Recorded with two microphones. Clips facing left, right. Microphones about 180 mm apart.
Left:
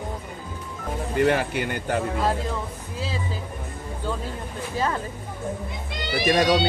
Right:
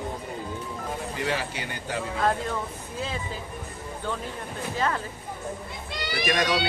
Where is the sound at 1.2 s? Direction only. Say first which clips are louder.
Left 10 dB; 55° left (ahead or behind).